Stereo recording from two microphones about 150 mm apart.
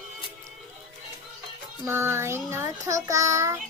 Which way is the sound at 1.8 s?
15° right (ahead or behind).